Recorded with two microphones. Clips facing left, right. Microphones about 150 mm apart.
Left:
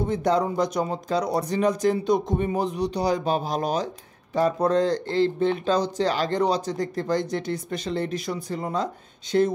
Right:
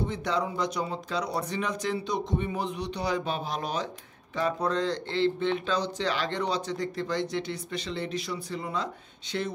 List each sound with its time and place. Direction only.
0.0 s speech: 45° left (ahead or behind)